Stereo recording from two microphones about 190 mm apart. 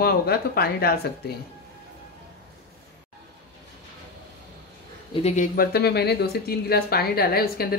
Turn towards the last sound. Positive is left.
turn(degrees=55)  # may be behind; listen again after turning